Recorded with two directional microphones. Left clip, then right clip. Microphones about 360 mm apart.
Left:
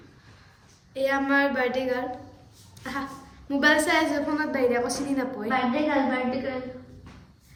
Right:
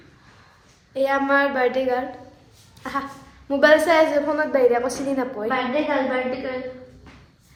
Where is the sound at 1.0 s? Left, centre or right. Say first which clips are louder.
Right 4 dB; centre.